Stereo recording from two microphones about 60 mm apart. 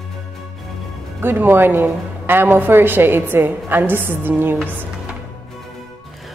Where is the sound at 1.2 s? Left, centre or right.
Right.